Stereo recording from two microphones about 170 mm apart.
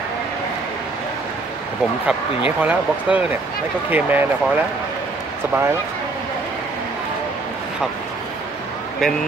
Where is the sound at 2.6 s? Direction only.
10° right (ahead or behind).